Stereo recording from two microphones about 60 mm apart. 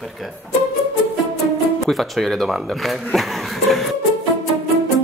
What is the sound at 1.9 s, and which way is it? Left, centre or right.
Speech, centre.